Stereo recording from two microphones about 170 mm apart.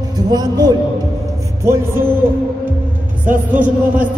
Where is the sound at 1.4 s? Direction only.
15° right (ahead or behind).